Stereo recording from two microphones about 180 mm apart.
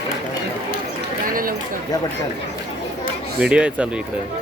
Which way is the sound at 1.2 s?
50° right (ahead or behind).